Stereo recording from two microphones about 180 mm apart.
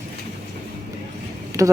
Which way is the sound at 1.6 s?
15° right (ahead or behind).